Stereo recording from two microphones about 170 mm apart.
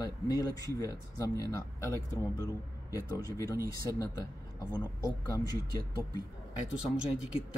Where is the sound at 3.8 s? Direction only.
20° left (ahead or behind).